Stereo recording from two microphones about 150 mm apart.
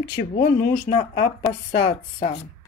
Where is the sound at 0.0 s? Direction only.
85° left.